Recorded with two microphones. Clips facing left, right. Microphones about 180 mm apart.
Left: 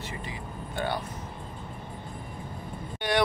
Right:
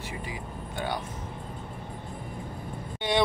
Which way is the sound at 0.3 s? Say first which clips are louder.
Even; 15° right (ahead or behind).